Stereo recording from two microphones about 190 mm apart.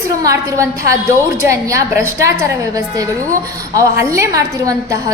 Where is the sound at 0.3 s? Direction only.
15° right (ahead or behind).